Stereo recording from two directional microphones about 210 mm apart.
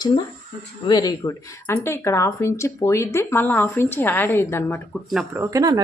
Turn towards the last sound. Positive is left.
turn(degrees=-15)  # may be behind; listen again after turning